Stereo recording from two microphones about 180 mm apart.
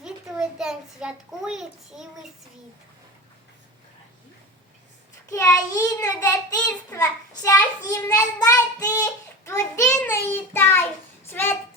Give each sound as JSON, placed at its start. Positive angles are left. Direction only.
{"t": 0.0, "sound": "a child's voice", "side_deg": -5}
{"t": 5.3, "sound": "child singing", "side_deg": 15}
{"t": 5.7, "sound": "a child's voice", "side_deg": 20}
{"t": 9.5, "sound": "child singing", "side_deg": 15}